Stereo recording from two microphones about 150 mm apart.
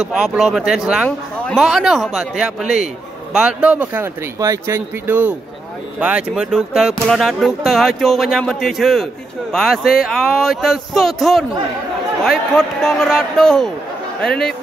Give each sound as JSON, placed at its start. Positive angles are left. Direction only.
{"t": 0.0, "sound": "speech", "side_deg": -5}